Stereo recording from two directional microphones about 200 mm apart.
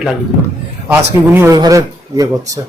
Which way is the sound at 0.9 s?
10° right (ahead or behind).